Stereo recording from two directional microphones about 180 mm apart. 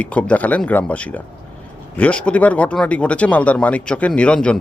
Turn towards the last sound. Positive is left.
turn(degrees=5)  # may be behind; listen again after turning